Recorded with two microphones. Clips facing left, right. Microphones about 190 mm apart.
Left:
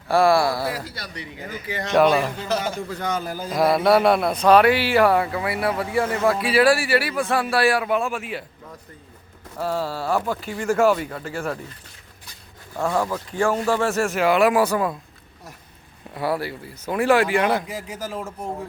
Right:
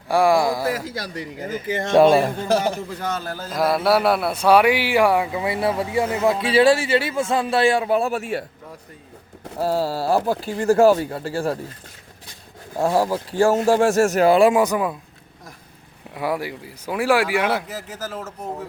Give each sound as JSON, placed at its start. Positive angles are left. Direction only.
{"t": 0.1, "sound": "speech", "side_deg": -15}
{"t": 1.0, "sound": "speech", "side_deg": -45}
{"t": 1.8, "sound": "a man's voice", "side_deg": -25}
{"t": 2.2, "sound": "speech", "side_deg": -50}
{"t": 3.2, "sound": "speech", "side_deg": 15}
{"t": 3.5, "sound": "a man's voice", "side_deg": 0}
{"t": 9.6, "sound": "speech", "side_deg": -35}
{"t": 12.7, "sound": "speech", "side_deg": -35}
{"t": 16.1, "sound": "speech", "side_deg": -15}
{"t": 17.8, "sound": "speech", "side_deg": 10}